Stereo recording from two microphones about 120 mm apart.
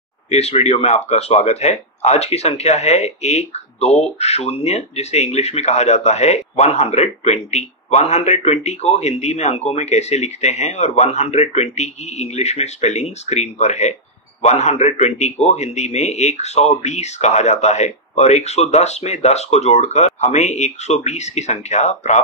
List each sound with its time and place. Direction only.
0.3 s a man's voice: 65° left (ahead or behind)